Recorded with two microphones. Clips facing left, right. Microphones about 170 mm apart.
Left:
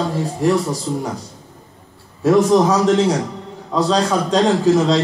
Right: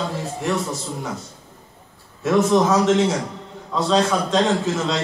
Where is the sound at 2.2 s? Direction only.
35° left (ahead or behind).